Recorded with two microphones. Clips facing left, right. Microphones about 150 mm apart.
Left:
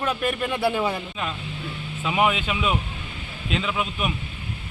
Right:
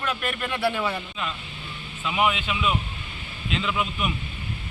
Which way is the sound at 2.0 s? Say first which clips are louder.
Left 2 dB; 35° left (ahead or behind).